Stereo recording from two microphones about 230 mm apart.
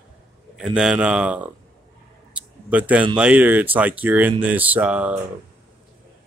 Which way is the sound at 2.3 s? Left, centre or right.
Centre.